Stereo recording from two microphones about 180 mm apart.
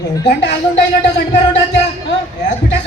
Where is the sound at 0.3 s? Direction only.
75° left (ahead or behind).